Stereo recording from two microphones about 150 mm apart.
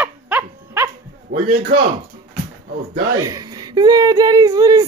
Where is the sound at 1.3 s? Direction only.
90° right.